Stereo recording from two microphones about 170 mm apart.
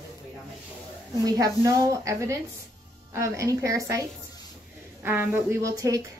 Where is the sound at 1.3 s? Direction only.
20° right (ahead or behind).